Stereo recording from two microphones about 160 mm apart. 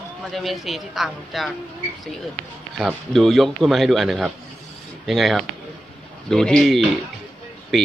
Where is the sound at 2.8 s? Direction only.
Centre (ahead or behind).